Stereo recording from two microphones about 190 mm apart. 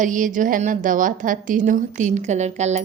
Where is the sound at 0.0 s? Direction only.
45° right (ahead or behind).